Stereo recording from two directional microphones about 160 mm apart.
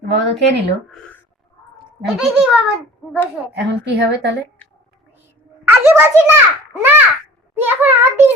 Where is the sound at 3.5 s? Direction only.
90° right.